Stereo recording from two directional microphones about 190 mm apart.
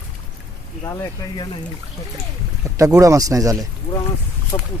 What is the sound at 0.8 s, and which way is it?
Speech, 20° left (ahead or behind).